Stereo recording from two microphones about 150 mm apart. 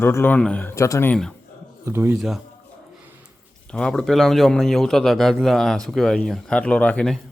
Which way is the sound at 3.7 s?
5° left (ahead or behind).